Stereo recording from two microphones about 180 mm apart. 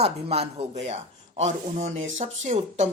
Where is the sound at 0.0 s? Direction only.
35° right (ahead or behind).